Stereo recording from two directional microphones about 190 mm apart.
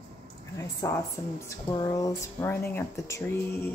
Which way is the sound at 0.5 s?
15° left (ahead or behind).